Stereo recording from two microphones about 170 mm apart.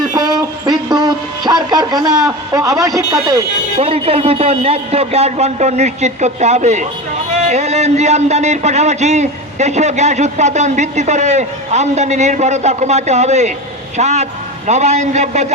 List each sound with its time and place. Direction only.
0.1 s a sound: 25° right (ahead or behind)
2.6 s a man's voice: 20° right (ahead or behind)
3.8 s speech: 35° right (ahead or behind)